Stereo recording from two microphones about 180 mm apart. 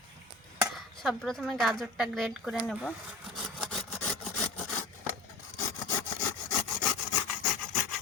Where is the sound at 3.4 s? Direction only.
Centre (ahead or behind).